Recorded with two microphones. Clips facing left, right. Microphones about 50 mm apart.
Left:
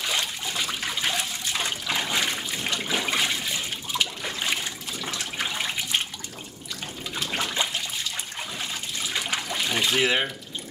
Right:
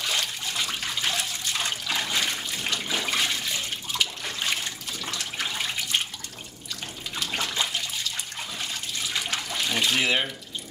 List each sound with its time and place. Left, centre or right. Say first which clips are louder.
0.0 s water: left 1 dB; centre
7.2 s trickle: left 1 dB; centre
9.1 s trickle: left 2 dB; centre